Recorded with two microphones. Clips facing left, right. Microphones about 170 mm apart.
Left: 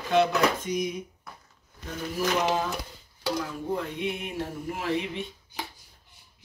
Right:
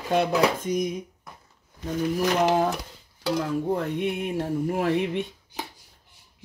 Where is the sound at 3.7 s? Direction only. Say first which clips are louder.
Right 4 dB; 50° right (ahead or behind).